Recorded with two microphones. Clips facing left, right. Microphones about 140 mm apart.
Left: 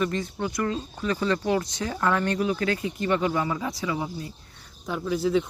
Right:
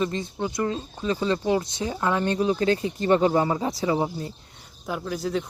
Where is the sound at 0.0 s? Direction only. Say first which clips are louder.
Even; 20° right (ahead or behind).